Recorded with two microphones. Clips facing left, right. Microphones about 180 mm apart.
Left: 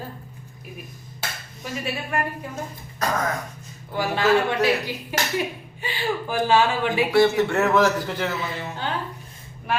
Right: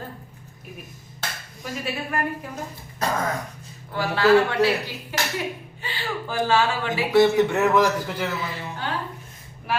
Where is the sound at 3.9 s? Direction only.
15° left (ahead or behind).